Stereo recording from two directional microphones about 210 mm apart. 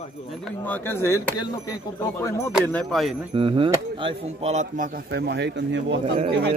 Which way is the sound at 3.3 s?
25° right (ahead or behind).